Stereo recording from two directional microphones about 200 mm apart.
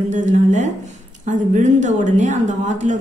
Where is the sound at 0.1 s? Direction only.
35° right (ahead or behind).